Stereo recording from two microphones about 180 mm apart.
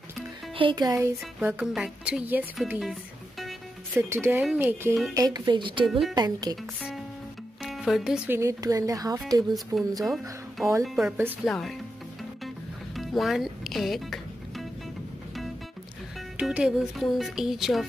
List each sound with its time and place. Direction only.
0.6 s a woman's voice: 25° right (ahead or behind); by 4.0 s centre (ahead or behind)
4.1 s speech: 15° right (ahead or behind)
5.9 s speech: centre (ahead or behind)
6.1 s speech: 25° right (ahead or behind)
6.5 s speech: centre (ahead or behind)
8.4 s speech: 15° right (ahead or behind)
9.7 s speech: centre (ahead or behind)
12.9 s music: centre (ahead or behind)
16.3 s speech: 5° right (ahead or behind)